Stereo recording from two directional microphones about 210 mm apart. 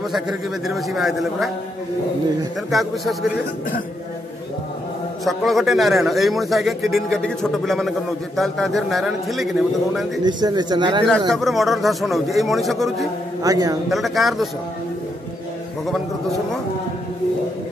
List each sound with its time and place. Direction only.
0.1 s a man's voice: centre (ahead or behind)
2.7 s a man's voice: centre (ahead or behind)
5.2 s a man's voice: centre (ahead or behind)
10.2 s a man's voice: 20° right (ahead or behind)
11.1 s a man's voice: centre (ahead or behind)
13.4 s a man's voice: 15° right (ahead or behind)
13.8 s a man's voice: centre (ahead or behind)